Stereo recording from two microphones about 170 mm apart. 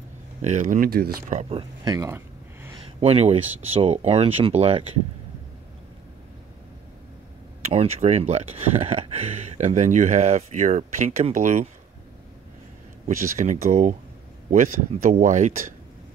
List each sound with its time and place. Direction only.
0.4 s speech: 45° right (ahead or behind); by 1.2 s 60° right (ahead or behind)
1.3 s a sound: 35° right (ahead or behind); by 2.7 s 15° right (ahead or behind)
3.0 s speech: 35° right (ahead or behind)
7.6 s speech: 40° right (ahead or behind)
13.2 s speech: 45° right (ahead or behind)